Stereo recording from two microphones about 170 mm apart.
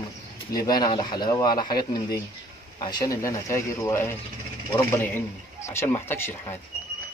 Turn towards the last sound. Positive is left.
turn(degrees=15)  # may be behind; listen again after turning